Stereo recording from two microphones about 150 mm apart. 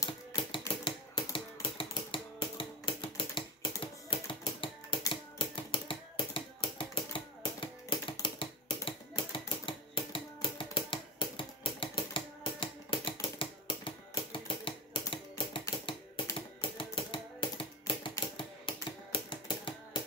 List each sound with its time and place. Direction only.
0.0 s typewriter: 25° left (ahead or behind)
0.5 s typewriter: 35° left (ahead or behind)
1.3 s typing: 35° left (ahead or behind)
5.1 s typewriter: 35° left (ahead or behind)
7.6 s typing: 35° left (ahead or behind)